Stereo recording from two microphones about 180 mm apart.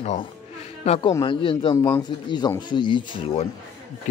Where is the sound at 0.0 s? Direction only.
35° left (ahead or behind).